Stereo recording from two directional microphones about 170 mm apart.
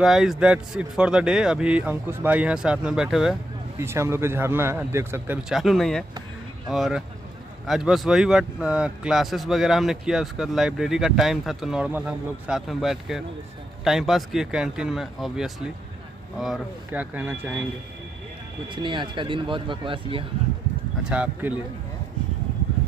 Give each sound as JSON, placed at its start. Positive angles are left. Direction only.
{"t": 0.0, "sound": "a man's voice", "side_deg": 0}
{"t": 3.7, "sound": "speech", "side_deg": -15}
{"t": 5.6, "sound": "a man's voice", "side_deg": 0}
{"t": 18.8, "sound": "speech", "side_deg": -30}
{"t": 21.0, "sound": "speech", "side_deg": -5}